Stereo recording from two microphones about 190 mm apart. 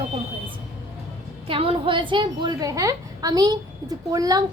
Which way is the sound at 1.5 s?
30° right (ahead or behind).